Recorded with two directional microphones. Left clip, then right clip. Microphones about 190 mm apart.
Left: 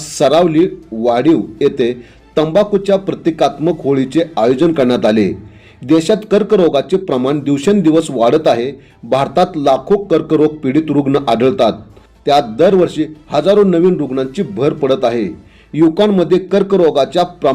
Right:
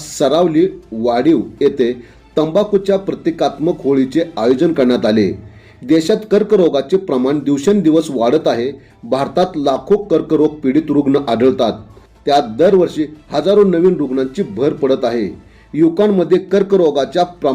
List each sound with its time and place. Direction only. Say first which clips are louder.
0.0 s a man's voice: left 3 dB; 20° left (ahead or behind)